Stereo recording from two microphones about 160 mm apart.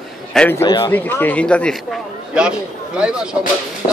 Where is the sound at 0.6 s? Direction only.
30° left (ahead or behind).